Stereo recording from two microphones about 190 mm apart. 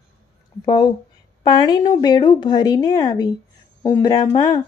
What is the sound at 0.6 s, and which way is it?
Speech, 25° left (ahead or behind).